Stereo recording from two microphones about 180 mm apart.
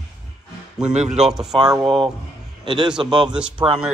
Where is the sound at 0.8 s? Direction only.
40° right (ahead or behind).